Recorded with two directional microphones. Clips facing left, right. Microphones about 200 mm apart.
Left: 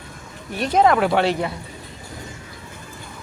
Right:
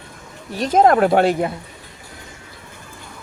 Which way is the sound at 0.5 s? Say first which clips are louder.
Right 3 dB; 45° right (ahead or behind).